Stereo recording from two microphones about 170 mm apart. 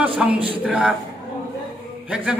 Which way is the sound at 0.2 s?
5° right (ahead or behind).